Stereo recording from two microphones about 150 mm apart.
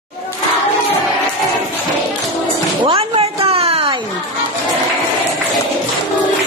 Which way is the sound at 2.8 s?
40° right (ahead or behind).